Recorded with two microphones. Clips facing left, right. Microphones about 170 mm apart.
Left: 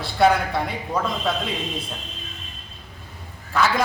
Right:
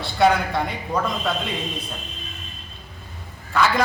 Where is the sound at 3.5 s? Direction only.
Centre (ahead or behind).